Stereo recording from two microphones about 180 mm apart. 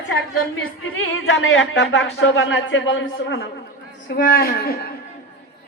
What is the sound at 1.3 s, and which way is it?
Speech, 90° left.